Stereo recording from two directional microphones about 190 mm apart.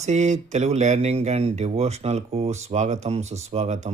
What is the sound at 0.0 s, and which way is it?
Speech, 40° right (ahead or behind).